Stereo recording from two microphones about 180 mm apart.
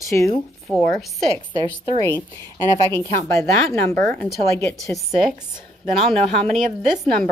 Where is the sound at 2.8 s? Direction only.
15° left (ahead or behind).